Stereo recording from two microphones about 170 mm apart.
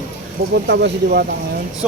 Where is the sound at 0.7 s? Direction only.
75° right (ahead or behind).